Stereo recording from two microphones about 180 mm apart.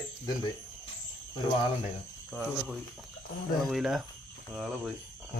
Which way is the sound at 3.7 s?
Centre (ahead or behind).